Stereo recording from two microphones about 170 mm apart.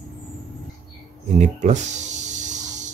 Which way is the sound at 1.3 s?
45° right (ahead or behind).